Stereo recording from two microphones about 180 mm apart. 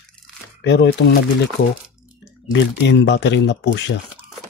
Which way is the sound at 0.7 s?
75° left (ahead or behind).